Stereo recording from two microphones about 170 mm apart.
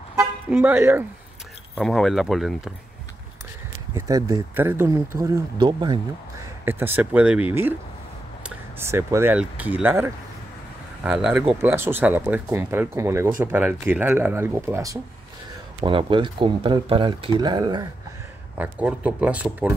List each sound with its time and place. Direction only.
0.5 s speech: 10° right (ahead or behind)
1.8 s speech: centre (ahead or behind)
3.9 s speech: 15° right (ahead or behind)
6.6 s speech: 10° right (ahead or behind)
15.8 s speech: 30° right (ahead or behind)
18.6 s speech: 10° right (ahead or behind)